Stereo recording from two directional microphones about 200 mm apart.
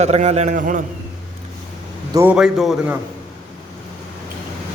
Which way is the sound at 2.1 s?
10° right (ahead or behind).